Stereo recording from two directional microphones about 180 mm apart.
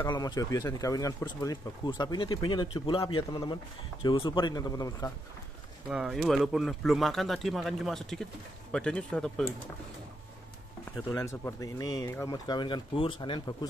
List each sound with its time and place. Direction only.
0.1 s speech: 20° left (ahead or behind)
5.9 s speech: 5° right (ahead or behind)
11.1 s speech: 15° left (ahead or behind)